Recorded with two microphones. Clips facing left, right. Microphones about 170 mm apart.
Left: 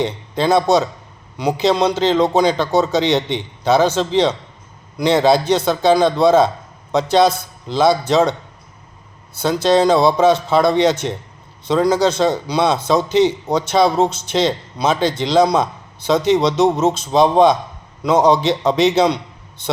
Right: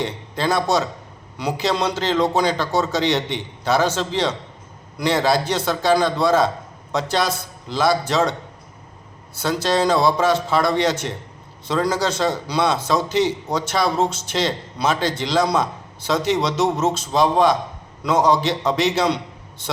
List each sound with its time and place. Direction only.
0.0 s a man's voice: 20° left (ahead or behind)